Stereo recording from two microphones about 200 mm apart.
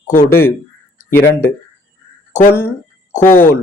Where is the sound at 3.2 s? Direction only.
10° left (ahead or behind).